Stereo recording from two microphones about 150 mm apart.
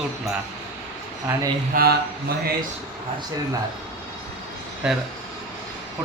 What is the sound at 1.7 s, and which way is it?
Speech, 70° right (ahead or behind).